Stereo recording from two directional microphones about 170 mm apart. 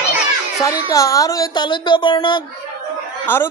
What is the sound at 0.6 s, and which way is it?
A woman's voice, 20° left (ahead or behind).